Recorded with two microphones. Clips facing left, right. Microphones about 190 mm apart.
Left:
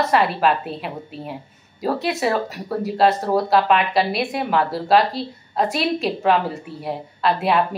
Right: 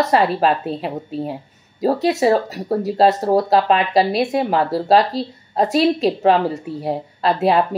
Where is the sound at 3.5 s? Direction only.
30° right (ahead or behind).